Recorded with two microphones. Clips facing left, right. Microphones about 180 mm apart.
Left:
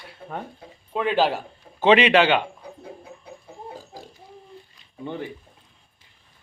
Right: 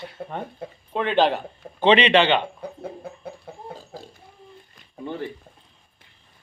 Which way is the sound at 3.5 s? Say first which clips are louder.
Right 3 dB; 65° right (ahead or behind).